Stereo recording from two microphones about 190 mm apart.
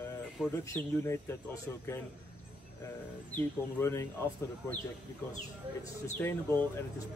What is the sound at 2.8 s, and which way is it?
Speech, 15° left (ahead or behind).